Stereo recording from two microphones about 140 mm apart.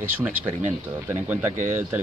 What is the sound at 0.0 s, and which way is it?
Speech, 10° right (ahead or behind).